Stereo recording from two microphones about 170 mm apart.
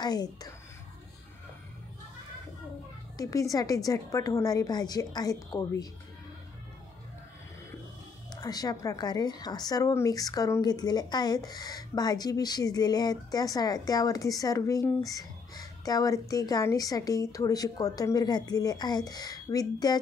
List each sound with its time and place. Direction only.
0.0 s a woman's voice: 25° left (ahead or behind)
3.2 s a woman's voice: 20° left (ahead or behind)
8.3 s a woman's voice: 20° left (ahead or behind)